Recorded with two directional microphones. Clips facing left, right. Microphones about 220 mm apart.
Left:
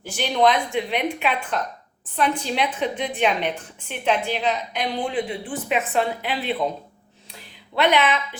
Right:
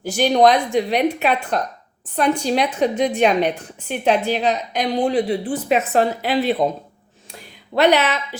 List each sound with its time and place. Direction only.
0.0 s a woman's voice: 40° right (ahead or behind)
7.8 s a woman's voice: 40° right (ahead or behind)